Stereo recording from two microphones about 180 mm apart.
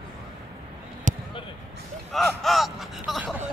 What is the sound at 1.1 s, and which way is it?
Basketball bounce, 45° right (ahead or behind).